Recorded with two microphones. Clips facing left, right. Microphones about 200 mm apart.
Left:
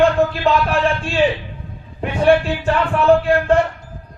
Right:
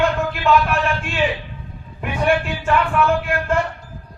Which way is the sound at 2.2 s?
35° left (ahead or behind).